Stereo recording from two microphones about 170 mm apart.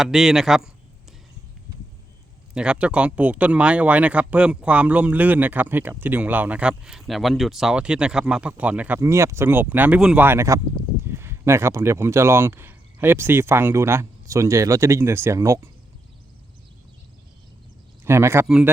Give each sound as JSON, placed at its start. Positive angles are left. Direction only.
{"t": 0.0, "sound": "speech", "side_deg": -5}
{"t": 2.6, "sound": "speech", "side_deg": -5}
{"t": 18.0, "sound": "speech", "side_deg": -15}